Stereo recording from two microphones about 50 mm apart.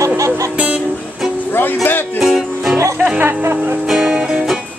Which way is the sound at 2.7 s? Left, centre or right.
Right.